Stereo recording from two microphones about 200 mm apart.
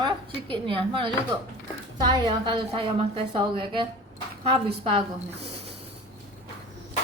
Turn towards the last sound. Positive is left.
turn(degrees=-30)  # may be behind; listen again after turning